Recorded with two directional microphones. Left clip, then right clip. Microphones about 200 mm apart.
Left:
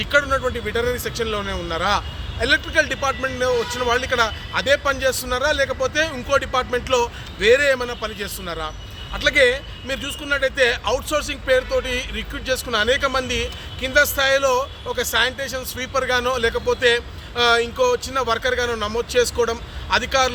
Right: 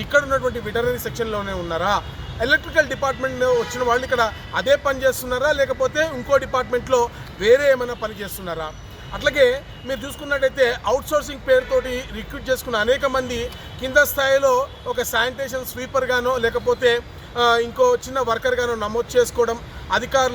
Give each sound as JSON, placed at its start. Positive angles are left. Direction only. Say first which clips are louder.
{"t": 0.0, "sound": "speech", "louder": "even", "side_deg": 5}
{"t": 0.3, "sound": "speech", "louder": "even", "side_deg": 20}
{"t": 0.7, "sound": "speech", "louder": "even", "side_deg": 5}
{"t": 3.2, "sound": "speech", "louder": "even", "side_deg": 20}
{"t": 3.4, "sound": "a man's voice", "louder": "right 2 dB", "side_deg": 5}